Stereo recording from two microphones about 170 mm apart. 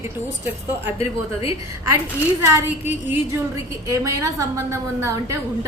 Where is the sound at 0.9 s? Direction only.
35° left (ahead or behind).